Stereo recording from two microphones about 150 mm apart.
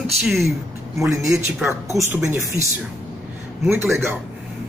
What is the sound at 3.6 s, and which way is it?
Speech, 15° right (ahead or behind).